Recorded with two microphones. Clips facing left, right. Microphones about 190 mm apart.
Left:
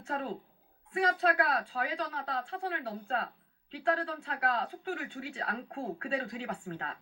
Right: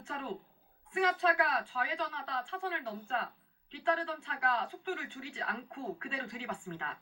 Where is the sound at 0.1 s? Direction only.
40° left (ahead or behind).